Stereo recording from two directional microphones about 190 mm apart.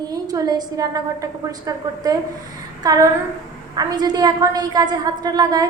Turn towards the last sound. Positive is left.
turn(degrees=-20)  # may be behind; listen again after turning